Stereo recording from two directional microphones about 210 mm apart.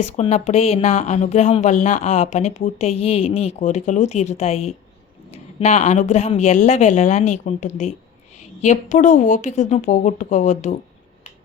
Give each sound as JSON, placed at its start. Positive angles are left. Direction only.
{"t": 0.0, "sound": "speech", "side_deg": 30}